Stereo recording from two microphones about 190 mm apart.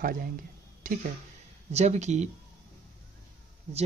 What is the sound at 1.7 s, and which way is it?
Speech, 35° right (ahead or behind).